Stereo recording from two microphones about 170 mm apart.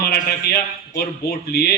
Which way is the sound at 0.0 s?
65° left (ahead or behind).